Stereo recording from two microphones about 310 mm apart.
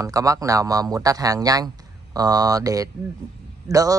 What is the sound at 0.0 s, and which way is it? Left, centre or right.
Speech, centre.